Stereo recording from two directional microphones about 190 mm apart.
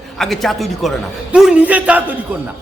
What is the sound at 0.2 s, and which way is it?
A man's voice, centre (ahead or behind).